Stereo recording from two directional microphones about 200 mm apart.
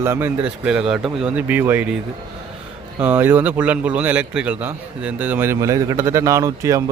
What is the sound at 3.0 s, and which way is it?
A man's voice, 10° right (ahead or behind).